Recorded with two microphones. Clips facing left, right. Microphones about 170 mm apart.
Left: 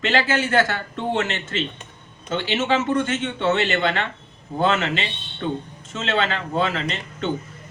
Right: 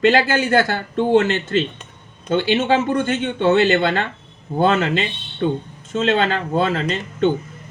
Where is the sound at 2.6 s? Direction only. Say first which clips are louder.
Right 3 dB; 35° right (ahead or behind).